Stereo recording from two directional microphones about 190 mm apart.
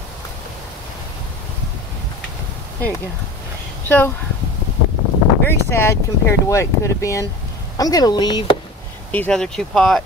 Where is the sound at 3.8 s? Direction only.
10° left (ahead or behind).